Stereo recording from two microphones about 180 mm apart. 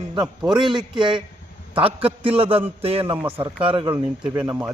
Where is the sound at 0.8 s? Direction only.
25° right (ahead or behind).